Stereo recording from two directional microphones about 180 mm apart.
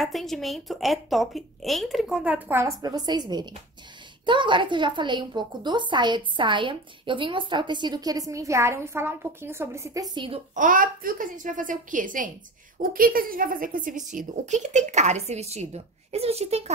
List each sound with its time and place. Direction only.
0.0 s a woman's voice: centre (ahead or behind); by 10.4 s 25° right (ahead or behind)
10.5 s a woman's voice: 45° right (ahead or behind)